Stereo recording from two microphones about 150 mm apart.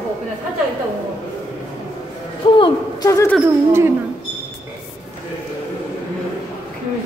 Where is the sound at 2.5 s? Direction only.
30° left (ahead or behind).